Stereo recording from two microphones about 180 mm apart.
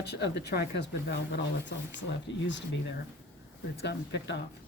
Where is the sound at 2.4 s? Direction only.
85° left.